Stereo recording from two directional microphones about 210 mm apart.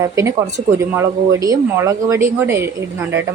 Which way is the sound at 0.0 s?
15° right (ahead or behind).